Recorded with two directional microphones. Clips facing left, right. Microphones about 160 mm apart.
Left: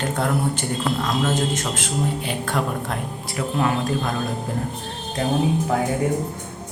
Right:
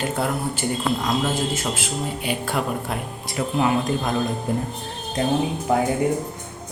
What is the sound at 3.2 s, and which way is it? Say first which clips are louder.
Speech: right 1 dB; 20° right (ahead or behind).